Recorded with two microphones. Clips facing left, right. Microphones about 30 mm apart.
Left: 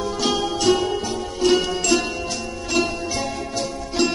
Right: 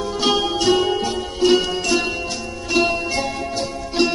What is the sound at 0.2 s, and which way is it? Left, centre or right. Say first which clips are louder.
Music: right 4 dB; centre.